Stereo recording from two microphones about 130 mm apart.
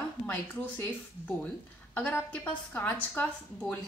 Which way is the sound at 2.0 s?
10° left (ahead or behind).